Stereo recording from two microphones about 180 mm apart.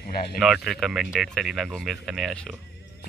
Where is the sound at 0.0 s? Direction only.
55° left (ahead or behind).